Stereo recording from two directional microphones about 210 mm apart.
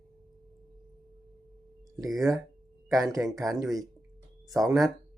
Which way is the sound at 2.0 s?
Centre (ahead or behind).